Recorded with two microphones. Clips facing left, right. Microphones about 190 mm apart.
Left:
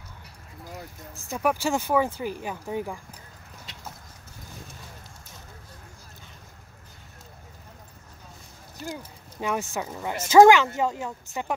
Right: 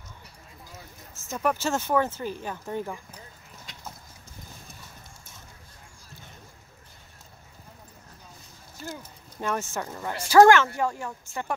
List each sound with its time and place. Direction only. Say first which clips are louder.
1.1 s speech: left 1 dB; 10° left (ahead or behind)
9.4 s speech: left 1 dB; 15° left (ahead or behind)
10.1 s a woman's voice: left 1 dB; 20° left (ahead or behind)